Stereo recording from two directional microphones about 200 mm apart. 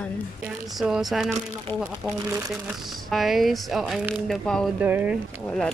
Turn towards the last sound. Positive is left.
turn(degrees=5)  # may be behind; listen again after turning